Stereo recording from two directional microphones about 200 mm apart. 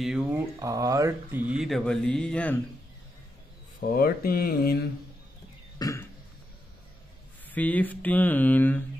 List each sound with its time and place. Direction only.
0.0 s mantra: 5° right (ahead or behind)
0.6 s mantra: 15° right (ahead or behind); by 2.5 s 5° left (ahead or behind)
3.8 s speech: 45° left (ahead or behind)
5.8 s burping: 15° left (ahead or behind)
7.4 s mantra: 10° left (ahead or behind)